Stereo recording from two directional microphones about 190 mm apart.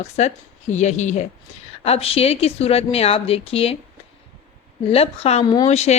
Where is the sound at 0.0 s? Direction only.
35° left (ahead or behind).